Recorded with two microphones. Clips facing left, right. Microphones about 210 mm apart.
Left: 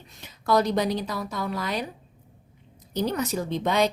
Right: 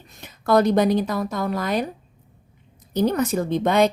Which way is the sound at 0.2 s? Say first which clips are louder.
Right 5 dB; 55° right (ahead or behind).